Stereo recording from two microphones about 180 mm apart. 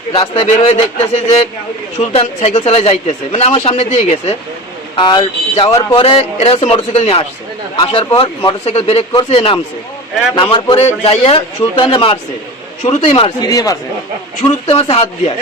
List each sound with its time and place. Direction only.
0.1 s speech: 40° left (ahead or behind)
4.9 s speech: 25° left (ahead or behind)
13.5 s speech: 20° left (ahead or behind)
14.4 s speech: 30° left (ahead or behind)